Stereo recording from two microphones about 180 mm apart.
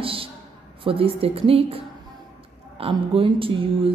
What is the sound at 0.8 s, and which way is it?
A woman's voice, 30° right (ahead or behind).